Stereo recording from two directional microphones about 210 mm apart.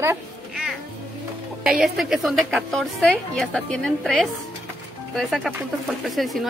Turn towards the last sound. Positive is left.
turn(degrees=0)  # may be behind; listen again after turning